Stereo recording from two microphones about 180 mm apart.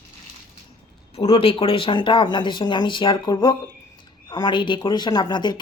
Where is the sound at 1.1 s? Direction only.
30° left (ahead or behind).